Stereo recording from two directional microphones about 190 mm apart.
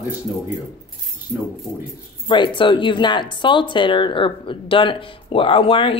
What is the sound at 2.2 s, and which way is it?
Speech, 25° left (ahead or behind).